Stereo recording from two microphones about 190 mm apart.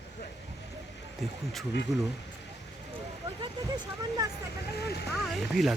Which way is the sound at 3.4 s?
20° right (ahead or behind).